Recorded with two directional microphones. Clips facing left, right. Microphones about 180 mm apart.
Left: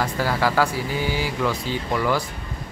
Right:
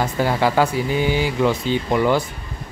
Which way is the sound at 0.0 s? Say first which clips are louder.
Right 3 dB; 20° right (ahead or behind).